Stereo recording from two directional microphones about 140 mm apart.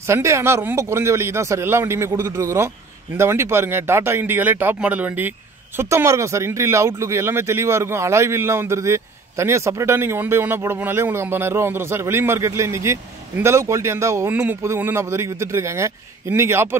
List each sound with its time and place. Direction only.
0.0 s speech: 20° right (ahead or behind)